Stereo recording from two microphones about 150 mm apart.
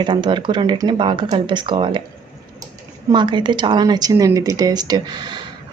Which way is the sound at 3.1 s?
30° right (ahead or behind).